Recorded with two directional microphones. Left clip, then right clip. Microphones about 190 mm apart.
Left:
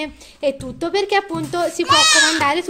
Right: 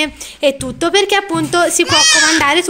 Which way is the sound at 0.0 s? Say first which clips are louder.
Right 7 dB; 5° left (ahead or behind).